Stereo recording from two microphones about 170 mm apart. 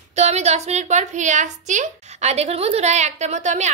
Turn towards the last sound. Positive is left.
turn(degrees=-45)  # may be behind; listen again after turning